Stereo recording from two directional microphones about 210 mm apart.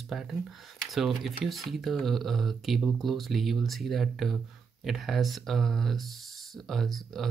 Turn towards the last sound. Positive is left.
turn(degrees=0)  # may be behind; listen again after turning